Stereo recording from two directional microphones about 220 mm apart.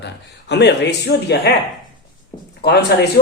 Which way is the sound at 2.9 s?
50° left (ahead or behind).